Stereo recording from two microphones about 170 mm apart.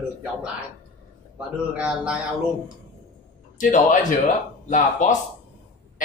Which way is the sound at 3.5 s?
50° left (ahead or behind).